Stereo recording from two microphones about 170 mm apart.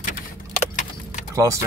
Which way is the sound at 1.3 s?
20° right (ahead or behind).